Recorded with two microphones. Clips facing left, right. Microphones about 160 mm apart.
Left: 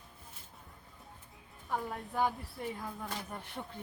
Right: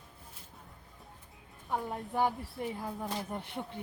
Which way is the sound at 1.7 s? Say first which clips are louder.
Right 2 dB; 20° right (ahead or behind).